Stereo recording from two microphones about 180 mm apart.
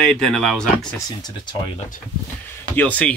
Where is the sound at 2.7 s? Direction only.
10° left (ahead or behind).